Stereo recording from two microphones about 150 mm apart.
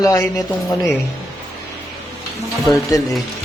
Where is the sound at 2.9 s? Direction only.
20° left (ahead or behind).